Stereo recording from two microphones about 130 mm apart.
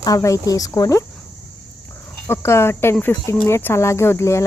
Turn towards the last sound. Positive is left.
turn(degrees=20)  # may be behind; listen again after turning